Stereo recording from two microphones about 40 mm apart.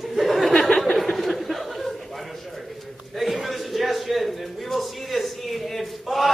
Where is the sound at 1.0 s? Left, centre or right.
Centre.